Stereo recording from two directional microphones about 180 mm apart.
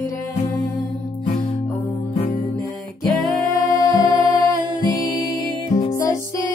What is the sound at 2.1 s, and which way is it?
Music, 35° left (ahead or behind).